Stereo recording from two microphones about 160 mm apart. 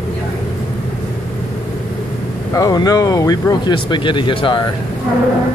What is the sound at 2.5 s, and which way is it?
Speech, 20° left (ahead or behind).